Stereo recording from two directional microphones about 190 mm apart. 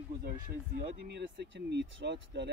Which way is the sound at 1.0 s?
65° right (ahead or behind).